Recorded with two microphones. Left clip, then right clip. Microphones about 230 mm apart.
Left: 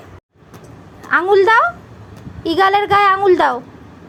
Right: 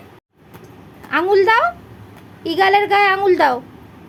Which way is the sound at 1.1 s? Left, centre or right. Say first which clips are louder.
Left 2 dB; centre.